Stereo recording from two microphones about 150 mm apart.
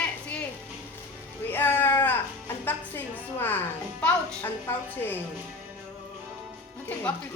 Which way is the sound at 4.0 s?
10° left (ahead or behind).